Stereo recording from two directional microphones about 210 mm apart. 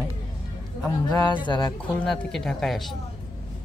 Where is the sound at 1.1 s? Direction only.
20° left (ahead or behind).